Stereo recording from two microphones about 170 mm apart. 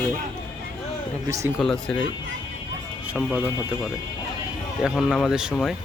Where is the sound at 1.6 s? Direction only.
5° left (ahead or behind).